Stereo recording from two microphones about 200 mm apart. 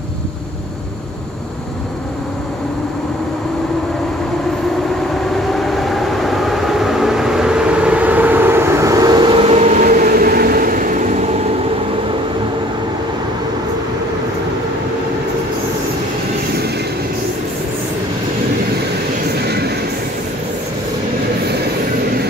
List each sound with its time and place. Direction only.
5.3 s train: centre (ahead or behind); by 9.8 s 30° right (ahead or behind)
9.8 s vehicle: 45° right (ahead or behind)
19.4 s train: 55° right (ahead or behind)